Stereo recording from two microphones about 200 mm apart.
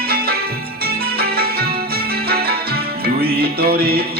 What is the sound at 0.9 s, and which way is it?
Music, 50° right (ahead or behind).